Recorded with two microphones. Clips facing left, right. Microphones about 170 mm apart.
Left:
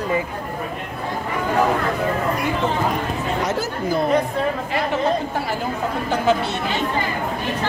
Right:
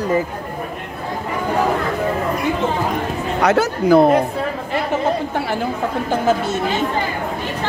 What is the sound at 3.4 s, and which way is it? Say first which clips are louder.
Speech: right 7 dB; 70° right (ahead or behind).